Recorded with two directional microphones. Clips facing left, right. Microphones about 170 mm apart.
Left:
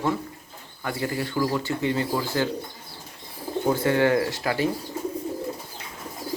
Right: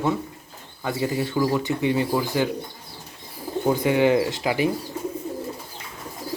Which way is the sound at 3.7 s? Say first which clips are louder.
Right 2 dB; 15° right (ahead or behind).